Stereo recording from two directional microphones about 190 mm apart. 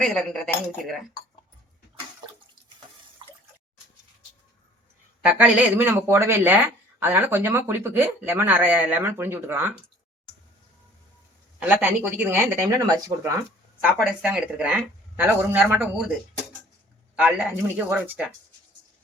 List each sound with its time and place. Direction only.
0.0 s speech: centre (ahead or behind)
5.2 s speech: 10° right (ahead or behind)
11.6 s speech: 10° right (ahead or behind)
13.8 s speech: 5° right (ahead or behind)
17.2 s speech: 10° right (ahead or behind)